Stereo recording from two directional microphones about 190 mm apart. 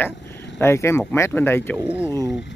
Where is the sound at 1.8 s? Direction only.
10° right (ahead or behind).